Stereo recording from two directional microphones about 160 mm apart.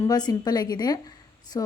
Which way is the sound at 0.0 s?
25° left (ahead or behind).